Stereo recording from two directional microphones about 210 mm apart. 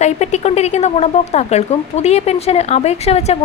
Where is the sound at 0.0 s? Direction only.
30° left (ahead or behind).